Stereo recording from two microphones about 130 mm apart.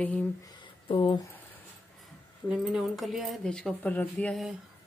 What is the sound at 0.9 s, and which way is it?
Speech, 45° left (ahead or behind).